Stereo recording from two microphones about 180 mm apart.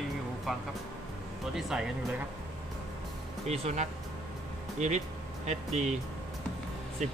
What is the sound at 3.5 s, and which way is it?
Speech, 35° right (ahead or behind).